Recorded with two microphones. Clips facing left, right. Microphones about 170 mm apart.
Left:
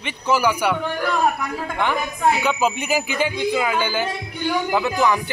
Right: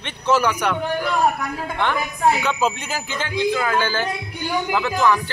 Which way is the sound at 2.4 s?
10° left (ahead or behind).